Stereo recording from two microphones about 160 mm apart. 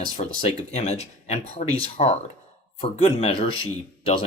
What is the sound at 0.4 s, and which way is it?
Speech, 45° left (ahead or behind).